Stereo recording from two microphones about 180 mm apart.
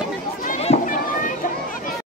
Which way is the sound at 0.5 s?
40° left (ahead or behind).